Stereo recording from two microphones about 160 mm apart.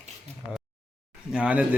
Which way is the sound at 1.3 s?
5° right (ahead or behind).